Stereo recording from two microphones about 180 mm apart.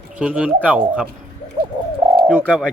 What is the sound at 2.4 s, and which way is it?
Speech, 5° left (ahead or behind).